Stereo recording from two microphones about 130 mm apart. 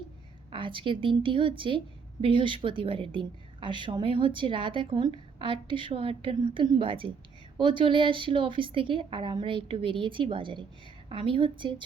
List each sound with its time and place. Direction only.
0.5 s a woman's voice: 40° right (ahead or behind)